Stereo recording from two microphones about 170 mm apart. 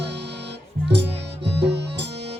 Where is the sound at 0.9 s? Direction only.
90° right.